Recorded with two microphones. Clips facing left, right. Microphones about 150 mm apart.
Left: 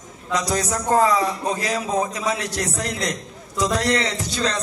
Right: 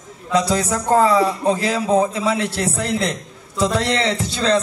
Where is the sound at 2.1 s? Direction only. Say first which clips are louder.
Right 4 dB; 30° right (ahead or behind).